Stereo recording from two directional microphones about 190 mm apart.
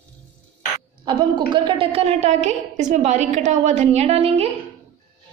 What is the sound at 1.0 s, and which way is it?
A woman's voice, 25° right (ahead or behind).